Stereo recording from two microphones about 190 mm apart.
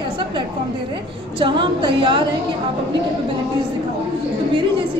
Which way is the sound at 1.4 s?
25° right (ahead or behind).